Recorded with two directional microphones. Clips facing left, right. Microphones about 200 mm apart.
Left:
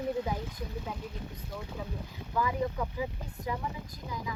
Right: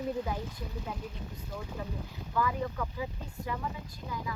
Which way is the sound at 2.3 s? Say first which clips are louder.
Left 1 dB; 15° left (ahead or behind).